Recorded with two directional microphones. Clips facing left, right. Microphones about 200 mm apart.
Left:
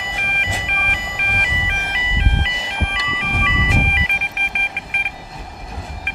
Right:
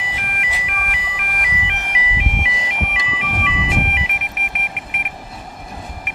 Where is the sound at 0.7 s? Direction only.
5° right (ahead or behind).